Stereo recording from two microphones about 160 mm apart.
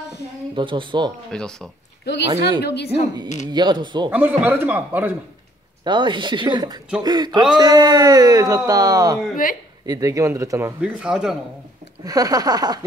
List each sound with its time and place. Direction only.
0.6 s speech: 30° right (ahead or behind)
1.3 s speech: 5° left (ahead or behind)
2.6 s a woman's voice: 90° left
3.4 s speech: 30° right (ahead or behind)
4.1 s a man's voice: 10° right (ahead or behind)
5.9 s speech: 30° right (ahead or behind)
9.4 s speech: 60° left (ahead or behind)
9.8 s speech: 20° right (ahead or behind)
10.8 s speech: 5° right (ahead or behind)
12.0 s speech: 25° right (ahead or behind)